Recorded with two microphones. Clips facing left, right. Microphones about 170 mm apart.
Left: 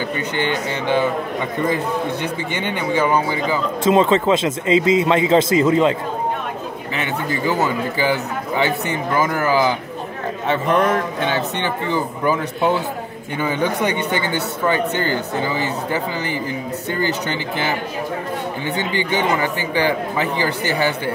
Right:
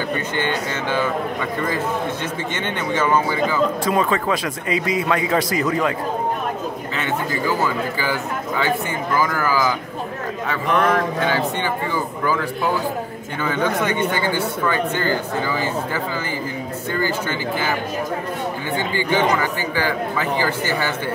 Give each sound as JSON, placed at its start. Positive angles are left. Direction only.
{"t": 0.4, "sound": "speech", "side_deg": 15}
{"t": 2.5, "sound": "speech", "side_deg": 10}
{"t": 3.8, "sound": "a man's voice", "side_deg": 25}
{"t": 7.0, "sound": "a man's voice", "side_deg": 20}
{"t": 18.8, "sound": "a man's voice", "side_deg": 20}